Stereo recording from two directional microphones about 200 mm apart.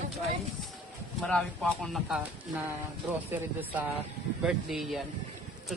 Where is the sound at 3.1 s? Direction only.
10° right (ahead or behind).